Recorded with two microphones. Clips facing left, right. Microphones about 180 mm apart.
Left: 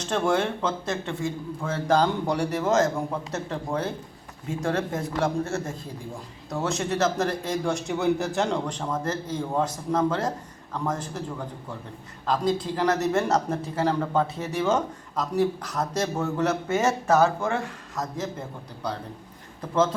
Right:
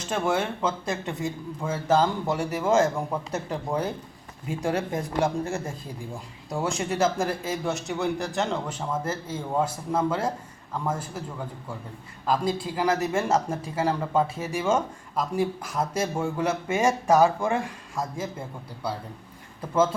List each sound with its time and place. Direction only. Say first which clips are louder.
0.0 s a man's voice: left 2 dB; 5° right (ahead or behind)